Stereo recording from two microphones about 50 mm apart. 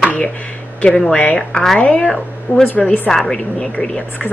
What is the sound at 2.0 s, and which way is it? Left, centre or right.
Speech, centre.